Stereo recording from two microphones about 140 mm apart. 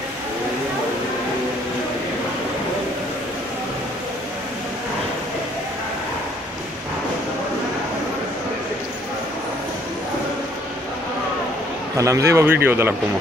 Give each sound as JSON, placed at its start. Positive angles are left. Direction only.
{"t": 12.0, "sound": "speech", "side_deg": -20}